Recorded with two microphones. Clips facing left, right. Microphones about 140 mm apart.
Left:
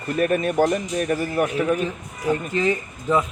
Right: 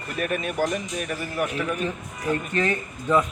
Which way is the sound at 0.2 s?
35° left (ahead or behind).